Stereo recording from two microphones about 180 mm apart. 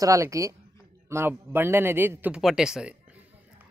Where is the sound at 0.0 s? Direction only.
15° right (ahead or behind).